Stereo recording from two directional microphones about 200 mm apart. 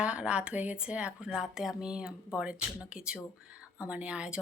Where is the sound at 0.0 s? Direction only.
5° right (ahead or behind).